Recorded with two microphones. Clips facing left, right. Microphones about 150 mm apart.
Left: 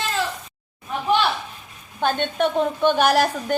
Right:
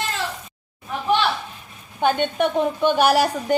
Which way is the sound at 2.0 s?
10° right (ahead or behind).